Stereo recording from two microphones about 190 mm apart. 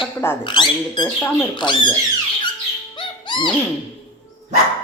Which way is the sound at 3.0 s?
25° left (ahead or behind).